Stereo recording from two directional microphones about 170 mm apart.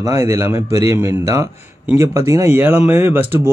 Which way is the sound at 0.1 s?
15° right (ahead or behind).